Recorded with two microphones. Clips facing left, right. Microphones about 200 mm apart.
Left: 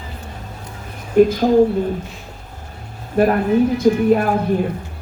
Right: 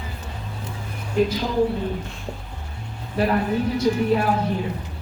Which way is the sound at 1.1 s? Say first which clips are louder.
Left 9 dB; 50° left (ahead or behind).